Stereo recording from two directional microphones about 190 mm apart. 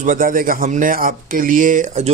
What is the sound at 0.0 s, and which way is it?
Speech, 45° right (ahead or behind).